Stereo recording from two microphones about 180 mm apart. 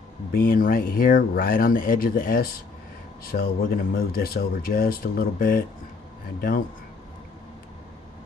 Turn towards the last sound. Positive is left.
turn(degrees=50)  # may be behind; listen again after turning